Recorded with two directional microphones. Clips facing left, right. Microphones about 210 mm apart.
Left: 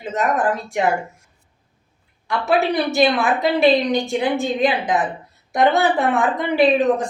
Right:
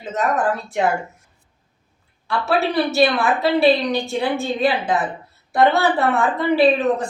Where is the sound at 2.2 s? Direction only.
15° left (ahead or behind).